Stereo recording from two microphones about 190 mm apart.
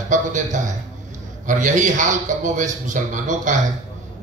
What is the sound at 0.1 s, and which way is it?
A man's voice, 40° right (ahead or behind).